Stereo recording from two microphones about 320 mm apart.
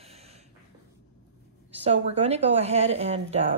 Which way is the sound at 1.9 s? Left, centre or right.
Centre.